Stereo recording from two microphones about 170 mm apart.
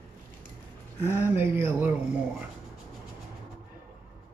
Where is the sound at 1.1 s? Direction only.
10° right (ahead or behind).